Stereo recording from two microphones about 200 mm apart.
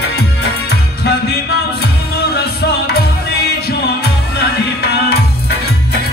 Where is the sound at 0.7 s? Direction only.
55° left (ahead or behind).